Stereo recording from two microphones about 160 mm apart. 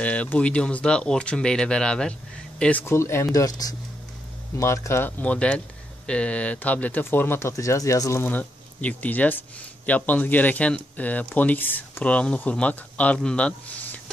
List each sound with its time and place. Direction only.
0.0 s speech: 10° left (ahead or behind)